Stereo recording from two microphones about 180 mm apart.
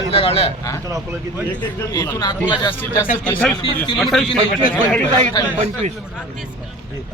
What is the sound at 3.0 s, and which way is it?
Speech, 50° left (ahead or behind).